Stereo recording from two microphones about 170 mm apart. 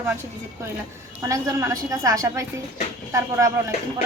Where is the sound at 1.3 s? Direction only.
20° right (ahead or behind).